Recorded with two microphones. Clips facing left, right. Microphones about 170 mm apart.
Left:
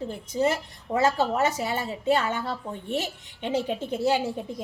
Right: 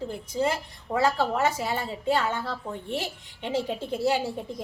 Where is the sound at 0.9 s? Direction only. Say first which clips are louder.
Left 1 dB; 20° left (ahead or behind).